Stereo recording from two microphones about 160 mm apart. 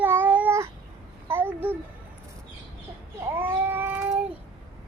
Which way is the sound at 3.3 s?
15° right (ahead or behind).